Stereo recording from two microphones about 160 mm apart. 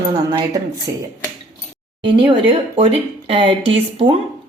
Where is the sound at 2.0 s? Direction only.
35° right (ahead or behind).